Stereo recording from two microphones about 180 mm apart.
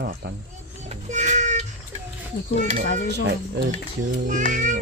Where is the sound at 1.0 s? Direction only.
40° right (ahead or behind).